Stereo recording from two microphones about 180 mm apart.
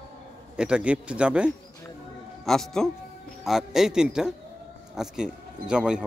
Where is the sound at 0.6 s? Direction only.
5° right (ahead or behind).